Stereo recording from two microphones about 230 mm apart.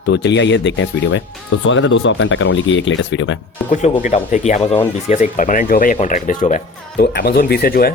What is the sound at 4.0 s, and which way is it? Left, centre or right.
Speech, left.